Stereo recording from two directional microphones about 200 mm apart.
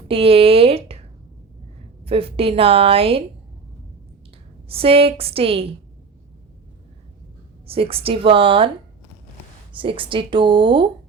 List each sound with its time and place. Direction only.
0.1 s a sound: 30° right (ahead or behind)
2.0 s a woman's voice: 30° right (ahead or behind)
4.7 s a woman's voice: 30° right (ahead or behind)
7.7 s a woman's voice: 30° right (ahead or behind)
9.7 s a woman's voice: 25° right (ahead or behind)